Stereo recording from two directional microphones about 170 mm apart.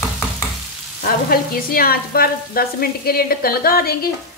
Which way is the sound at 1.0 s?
60° left (ahead or behind).